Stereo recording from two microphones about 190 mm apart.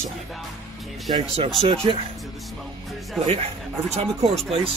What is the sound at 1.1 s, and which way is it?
Speech, 30° right (ahead or behind).